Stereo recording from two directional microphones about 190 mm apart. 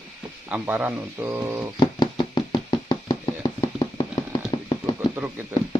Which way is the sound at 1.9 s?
20° left (ahead or behind).